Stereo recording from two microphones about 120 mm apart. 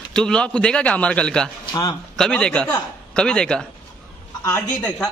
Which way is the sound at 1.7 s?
35° left (ahead or behind).